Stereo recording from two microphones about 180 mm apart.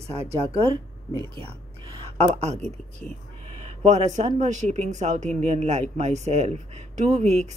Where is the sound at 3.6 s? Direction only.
35° right (ahead or behind).